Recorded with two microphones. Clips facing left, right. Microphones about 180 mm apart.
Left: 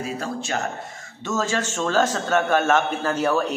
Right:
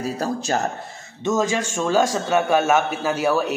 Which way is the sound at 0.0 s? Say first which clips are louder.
Right 4 dB; 40° right (ahead or behind).